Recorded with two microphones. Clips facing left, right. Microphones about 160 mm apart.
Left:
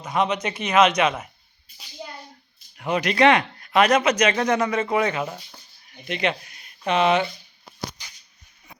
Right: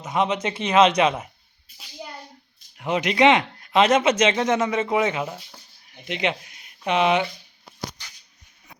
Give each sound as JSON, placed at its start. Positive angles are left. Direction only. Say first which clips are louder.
{"t": 0.0, "sound": "speech", "louder": "even", "side_deg": -25}
{"t": 2.7, "sound": "speech", "louder": "even", "side_deg": -20}
{"t": 5.2, "sound": "speech", "louder": "even", "side_deg": -10}
{"t": 6.1, "sound": "speech", "louder": "left 1 dB", "side_deg": -20}